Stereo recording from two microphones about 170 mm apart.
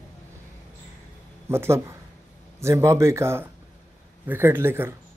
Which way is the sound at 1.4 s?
15° right (ahead or behind).